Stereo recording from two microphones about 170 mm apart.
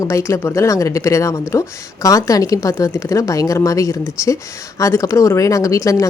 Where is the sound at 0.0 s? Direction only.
15° left (ahead or behind).